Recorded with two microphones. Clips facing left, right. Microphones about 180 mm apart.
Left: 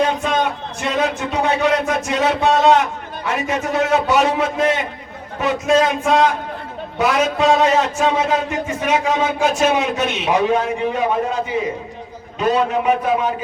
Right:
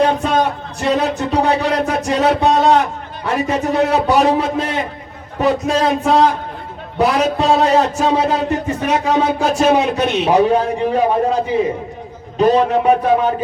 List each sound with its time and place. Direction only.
0.3 s a man's voice: 35° right (ahead or behind)
12.4 s a man's voice: 35° right (ahead or behind)